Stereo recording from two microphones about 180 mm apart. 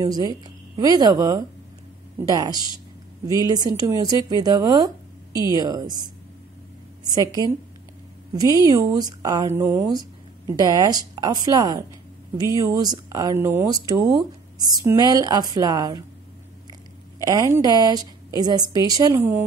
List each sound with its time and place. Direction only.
0.0 s speech: 20° right (ahead or behind)
8.4 s speech: 20° right (ahead or behind)
17.2 s a woman's voice: 20° right (ahead or behind)